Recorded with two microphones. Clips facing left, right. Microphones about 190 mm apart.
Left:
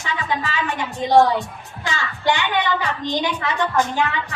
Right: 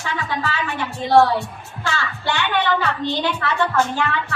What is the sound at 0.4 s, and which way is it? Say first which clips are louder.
Speech: even; 15° left (ahead or behind).